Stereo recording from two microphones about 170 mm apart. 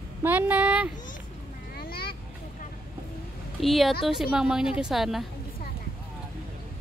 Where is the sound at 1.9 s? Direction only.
65° left (ahead or behind).